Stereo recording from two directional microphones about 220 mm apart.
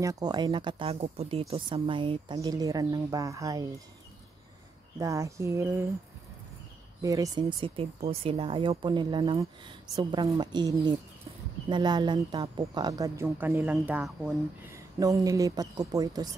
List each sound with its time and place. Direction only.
0.0 s speech: 15° right (ahead or behind)
4.9 s speech: 15° right (ahead or behind)
7.0 s speech: 15° right (ahead or behind)
15.0 s speech: 15° right (ahead or behind)